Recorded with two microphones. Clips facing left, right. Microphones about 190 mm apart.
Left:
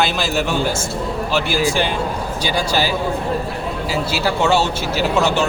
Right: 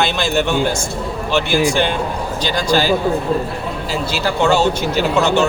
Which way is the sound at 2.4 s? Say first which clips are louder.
Right 3 dB; 10° left (ahead or behind).